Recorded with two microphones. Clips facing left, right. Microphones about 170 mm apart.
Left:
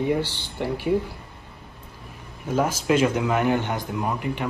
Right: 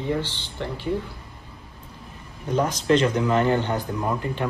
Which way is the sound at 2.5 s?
5° left (ahead or behind).